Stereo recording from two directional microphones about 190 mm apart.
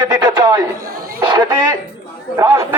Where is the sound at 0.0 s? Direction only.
20° right (ahead or behind).